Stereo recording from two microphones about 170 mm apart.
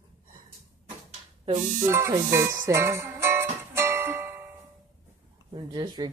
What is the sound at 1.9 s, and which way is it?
Music, 15° right (ahead or behind).